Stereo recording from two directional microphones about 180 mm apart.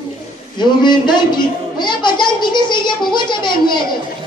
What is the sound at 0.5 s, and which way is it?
A man's voice, 25° left (ahead or behind).